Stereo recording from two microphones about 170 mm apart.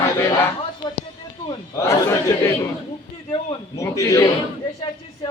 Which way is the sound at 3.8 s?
15° left (ahead or behind).